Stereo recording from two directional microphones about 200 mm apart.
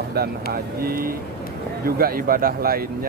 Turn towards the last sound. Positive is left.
turn(degrees=-50)  # may be behind; listen again after turning